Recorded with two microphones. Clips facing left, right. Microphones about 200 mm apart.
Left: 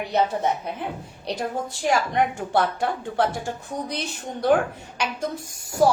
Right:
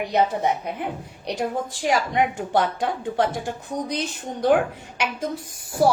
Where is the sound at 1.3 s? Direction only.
15° right (ahead or behind).